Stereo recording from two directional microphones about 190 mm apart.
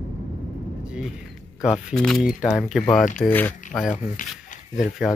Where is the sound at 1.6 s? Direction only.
5° right (ahead or behind).